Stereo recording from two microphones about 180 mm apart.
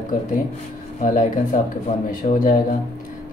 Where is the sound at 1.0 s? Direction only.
45° left (ahead or behind).